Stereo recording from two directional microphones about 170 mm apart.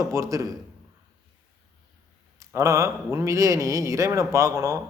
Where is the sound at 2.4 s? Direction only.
15° right (ahead or behind).